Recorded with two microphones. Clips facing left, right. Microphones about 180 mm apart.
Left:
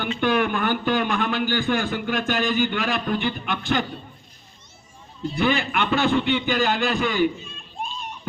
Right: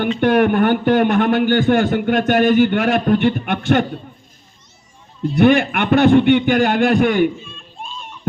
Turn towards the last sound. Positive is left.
turn(degrees=-55)  # may be behind; listen again after turning